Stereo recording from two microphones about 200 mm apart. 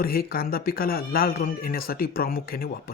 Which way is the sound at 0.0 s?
50° left (ahead or behind).